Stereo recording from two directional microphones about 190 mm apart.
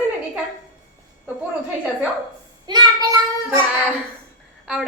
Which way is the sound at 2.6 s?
20° right (ahead or behind).